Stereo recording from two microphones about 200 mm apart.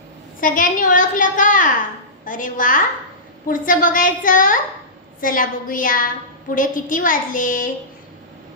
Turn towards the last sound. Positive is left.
turn(degrees=45)  # may be behind; listen again after turning